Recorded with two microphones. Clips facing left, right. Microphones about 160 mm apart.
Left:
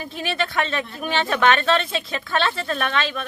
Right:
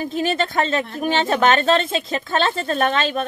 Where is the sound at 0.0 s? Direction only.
40° right (ahead or behind).